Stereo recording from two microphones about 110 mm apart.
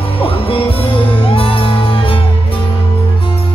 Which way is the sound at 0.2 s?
60° left (ahead or behind).